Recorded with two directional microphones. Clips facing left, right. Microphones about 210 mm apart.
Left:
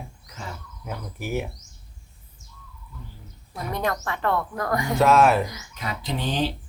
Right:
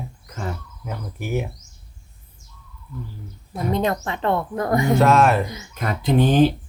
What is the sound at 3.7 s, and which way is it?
Speech, 20° right (ahead or behind).